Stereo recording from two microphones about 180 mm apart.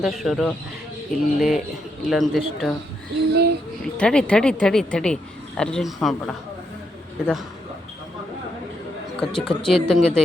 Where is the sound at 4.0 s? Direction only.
5° left (ahead or behind).